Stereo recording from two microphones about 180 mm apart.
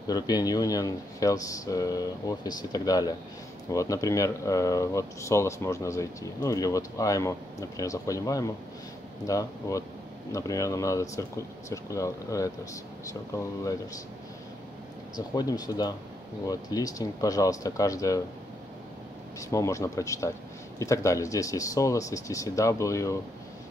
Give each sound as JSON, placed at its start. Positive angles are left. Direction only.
{"t": 0.0, "sound": "speech", "side_deg": 20}
{"t": 15.1, "sound": "speech", "side_deg": 20}
{"t": 19.5, "sound": "speech", "side_deg": 15}